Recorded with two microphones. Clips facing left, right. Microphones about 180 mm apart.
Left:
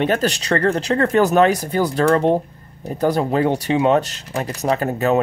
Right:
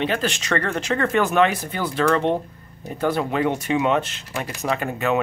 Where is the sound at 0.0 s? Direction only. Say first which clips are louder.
Left 5 dB; 40° left (ahead or behind).